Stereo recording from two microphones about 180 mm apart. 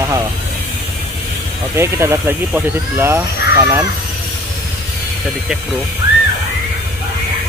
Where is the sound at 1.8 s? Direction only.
15° right (ahead or behind).